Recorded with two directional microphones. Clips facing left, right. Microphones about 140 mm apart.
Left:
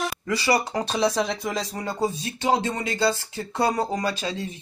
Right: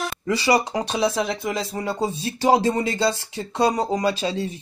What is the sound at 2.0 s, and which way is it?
Speech, 30° right (ahead or behind).